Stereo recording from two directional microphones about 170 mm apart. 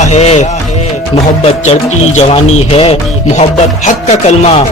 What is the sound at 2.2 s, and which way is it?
A man's voice, 35° left (ahead or behind).